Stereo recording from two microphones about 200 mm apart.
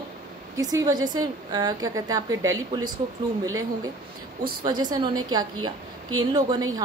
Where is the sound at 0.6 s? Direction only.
15° right (ahead or behind).